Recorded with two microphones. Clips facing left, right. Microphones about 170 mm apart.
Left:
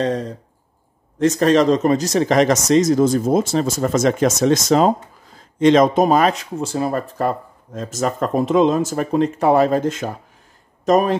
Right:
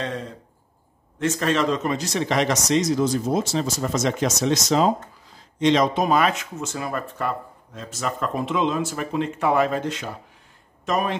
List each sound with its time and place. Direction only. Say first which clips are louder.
0.0 s speech: left 9 dB; 40° left (ahead or behind)